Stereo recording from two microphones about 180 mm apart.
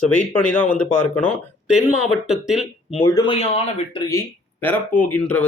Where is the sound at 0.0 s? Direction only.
5° left (ahead or behind).